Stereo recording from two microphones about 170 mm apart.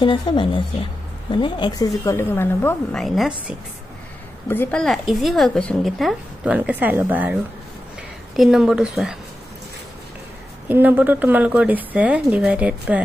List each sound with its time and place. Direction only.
0.0 s a woman's voice: 25° left (ahead or behind); by 3.0 s 10° left (ahead or behind)
3.0 s a woman's voice: 5° right (ahead or behind)
4.5 s a woman's voice: 10° left (ahead or behind); by 7.3 s 10° right (ahead or behind)
8.4 s a woman's voice: 5° right (ahead or behind)
10.7 s speech: 10° right (ahead or behind)